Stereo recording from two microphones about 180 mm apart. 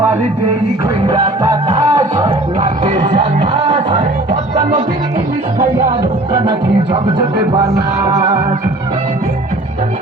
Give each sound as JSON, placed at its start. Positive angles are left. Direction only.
{"t": 1.0, "sound": "music", "side_deg": -20}
{"t": 4.3, "sound": "music", "side_deg": -40}
{"t": 6.3, "sound": "music", "side_deg": -25}